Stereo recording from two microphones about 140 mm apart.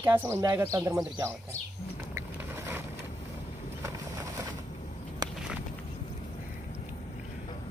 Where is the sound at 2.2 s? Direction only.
15° right (ahead or behind).